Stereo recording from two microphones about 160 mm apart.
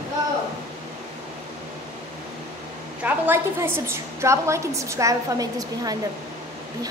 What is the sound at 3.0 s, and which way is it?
A woman's voice, 15° right (ahead or behind).